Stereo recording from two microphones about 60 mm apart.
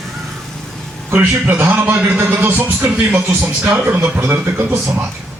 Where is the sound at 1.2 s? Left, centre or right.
Right.